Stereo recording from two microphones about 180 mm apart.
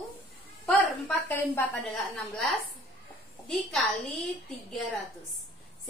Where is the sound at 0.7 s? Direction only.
5° left (ahead or behind).